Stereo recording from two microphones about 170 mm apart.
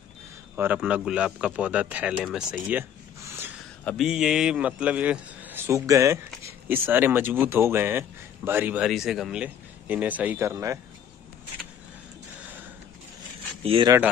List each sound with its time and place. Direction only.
0.6 s a man's voice: 10° right (ahead or behind)
3.2 s a sound: 15° right (ahead or behind)
3.8 s a man's voice: centre (ahead or behind); by 10.8 s 15° right (ahead or behind)
13.6 s speech: 35° right (ahead or behind)
13.8 s a man's voice: 10° right (ahead or behind)